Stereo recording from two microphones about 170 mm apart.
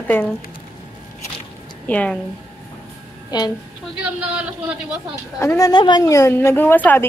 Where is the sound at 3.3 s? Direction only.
25° left (ahead or behind).